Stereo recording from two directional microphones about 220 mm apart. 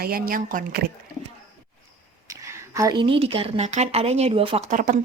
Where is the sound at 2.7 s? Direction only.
15° right (ahead or behind).